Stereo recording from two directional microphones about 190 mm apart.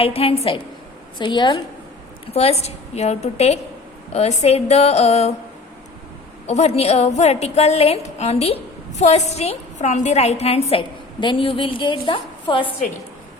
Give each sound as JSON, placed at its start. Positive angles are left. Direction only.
{"t": 0.0, "sound": "a woman's voice", "side_deg": 30}
{"t": 6.5, "sound": "a woman's voice", "side_deg": 35}